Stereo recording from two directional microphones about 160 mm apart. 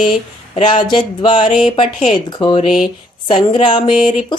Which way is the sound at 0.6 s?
30° left (ahead or behind).